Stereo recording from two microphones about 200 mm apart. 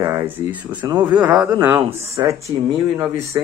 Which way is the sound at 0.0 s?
10° right (ahead or behind).